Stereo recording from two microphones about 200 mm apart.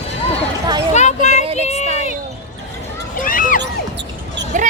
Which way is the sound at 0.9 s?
35° left (ahead or behind).